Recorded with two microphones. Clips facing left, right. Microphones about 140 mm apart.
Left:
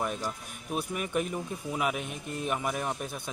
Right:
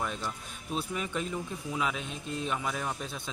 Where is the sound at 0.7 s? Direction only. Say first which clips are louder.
Left 3 dB; 15° left (ahead or behind).